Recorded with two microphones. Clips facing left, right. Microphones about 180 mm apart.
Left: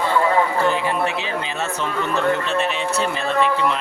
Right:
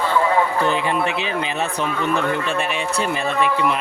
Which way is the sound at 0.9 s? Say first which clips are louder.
Right 1 dB; 20° right (ahead or behind).